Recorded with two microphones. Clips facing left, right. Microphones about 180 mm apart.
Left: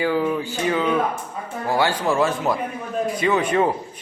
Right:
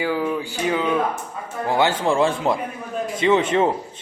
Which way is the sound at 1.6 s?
20° right (ahead or behind).